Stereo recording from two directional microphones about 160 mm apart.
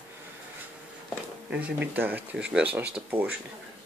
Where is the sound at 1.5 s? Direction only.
10° right (ahead or behind).